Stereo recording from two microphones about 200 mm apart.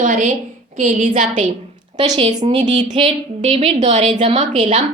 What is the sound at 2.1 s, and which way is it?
Speech, 20° right (ahead or behind).